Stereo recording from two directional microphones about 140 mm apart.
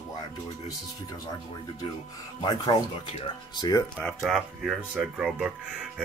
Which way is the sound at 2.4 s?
30° left (ahead or behind).